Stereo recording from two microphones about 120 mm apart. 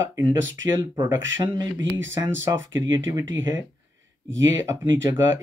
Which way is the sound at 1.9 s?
20° right (ahead or behind).